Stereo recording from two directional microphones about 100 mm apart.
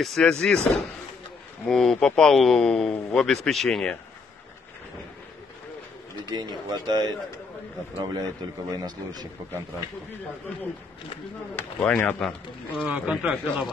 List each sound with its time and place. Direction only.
0.0 s a man's voice: 5° left (ahead or behind)
6.3 s speech: 45° right (ahead or behind)
11.5 s speech: 15° left (ahead or behind)
12.8 s speech: 10° right (ahead or behind)